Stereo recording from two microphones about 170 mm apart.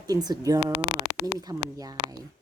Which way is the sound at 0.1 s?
20° right (ahead or behind).